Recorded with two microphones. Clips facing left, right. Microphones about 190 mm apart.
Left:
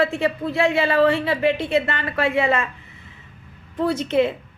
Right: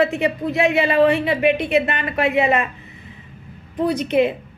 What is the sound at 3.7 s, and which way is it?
Speech, 15° right (ahead or behind).